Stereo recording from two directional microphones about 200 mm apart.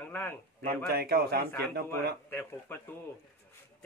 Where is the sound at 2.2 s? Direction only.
10° left (ahead or behind).